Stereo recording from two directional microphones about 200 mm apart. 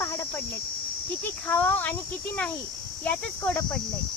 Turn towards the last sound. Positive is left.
turn(degrees=10)  # may be behind; listen again after turning